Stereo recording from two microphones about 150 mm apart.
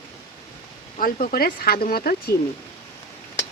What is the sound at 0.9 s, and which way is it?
Speech, 70° left (ahead or behind).